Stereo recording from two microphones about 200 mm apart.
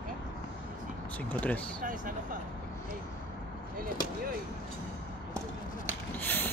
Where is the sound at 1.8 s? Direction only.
45° right (ahead or behind).